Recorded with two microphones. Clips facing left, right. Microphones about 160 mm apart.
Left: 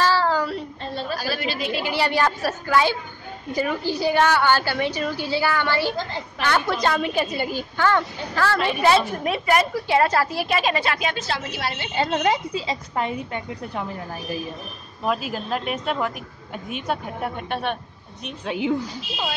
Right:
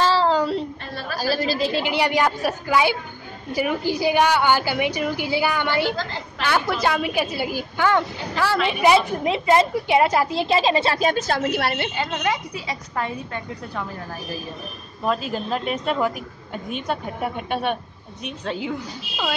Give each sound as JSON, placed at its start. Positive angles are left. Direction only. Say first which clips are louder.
{"t": 0.0, "sound": "child singing", "louder": "right 2 dB", "side_deg": -25}
{"t": 1.2, "sound": "a woman's voice", "louder": "right 5 dB", "side_deg": -35}
{"t": 12.0, "sound": "a woman's voice", "louder": "left 7 dB", "side_deg": 30}
{"t": 15.0, "sound": "a woman's voice", "louder": "right 1 dB", "side_deg": 5}
{"t": 18.2, "sound": "a woman's voice", "louder": "right 1 dB", "side_deg": 10}